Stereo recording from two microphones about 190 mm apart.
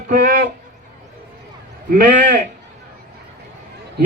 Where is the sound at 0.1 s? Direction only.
45° right (ahead or behind).